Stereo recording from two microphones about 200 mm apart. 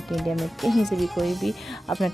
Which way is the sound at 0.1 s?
Centre (ahead or behind).